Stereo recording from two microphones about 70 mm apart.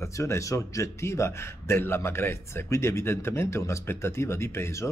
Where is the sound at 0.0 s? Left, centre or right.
Left.